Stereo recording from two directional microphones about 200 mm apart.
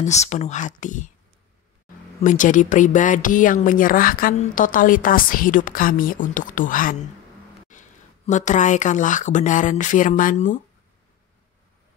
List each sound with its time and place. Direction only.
0.0 s speech: 35° left (ahead or behind)
2.2 s speech: 40° left (ahead or behind)
7.7 s a sound: 40° left (ahead or behind)
8.3 s speech: 35° left (ahead or behind)